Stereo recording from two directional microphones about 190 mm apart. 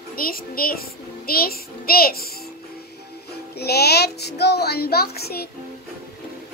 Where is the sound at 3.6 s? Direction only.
60° left (ahead or behind).